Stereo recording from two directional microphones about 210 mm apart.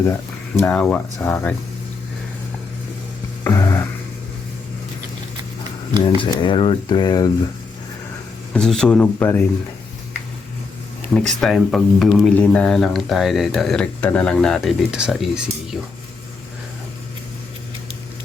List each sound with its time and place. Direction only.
0.6 s speech: 5° left (ahead or behind)
3.4 s music: 15° left (ahead or behind)
6.0 s speech: 20° left (ahead or behind)
8.5 s speech: 5° left (ahead or behind)
11.1 s speech: centre (ahead or behind)